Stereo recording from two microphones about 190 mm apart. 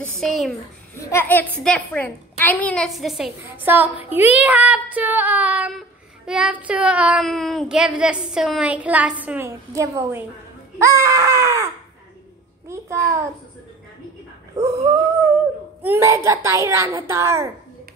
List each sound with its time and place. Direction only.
0.0 s a woman's voice: centre (ahead or behind)
0.9 s a woman's voice: 15° left (ahead or behind); by 3.9 s 10° right (ahead or behind)
4.1 s child singing: 10° right (ahead or behind)
8.3 s a woman's voice: 5° right (ahead or behind)
9.2 s child singing: 10° right (ahead or behind)
14.6 s child singing: 15° right (ahead or behind)